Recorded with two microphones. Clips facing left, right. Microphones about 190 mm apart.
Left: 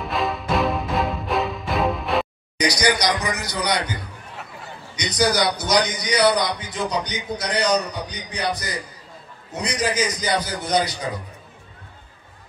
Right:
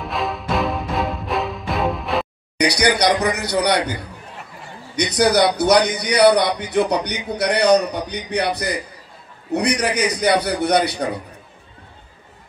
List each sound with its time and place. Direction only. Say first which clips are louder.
0.0 s music: even; centre (ahead or behind)
2.5 s a man's voice: right 3 dB; 65° right (ahead or behind)
4.9 s a man's voice: right 5 dB; 60° right (ahead or behind)